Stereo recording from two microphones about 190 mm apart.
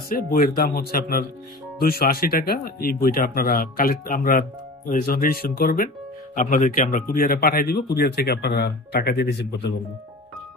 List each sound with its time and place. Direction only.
0.1 s speech: 50° left (ahead or behind); by 9.8 s 65° left (ahead or behind)